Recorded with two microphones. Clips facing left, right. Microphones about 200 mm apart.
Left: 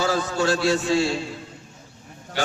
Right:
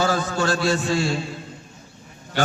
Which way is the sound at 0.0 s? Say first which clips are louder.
Even; 50° right (ahead or behind).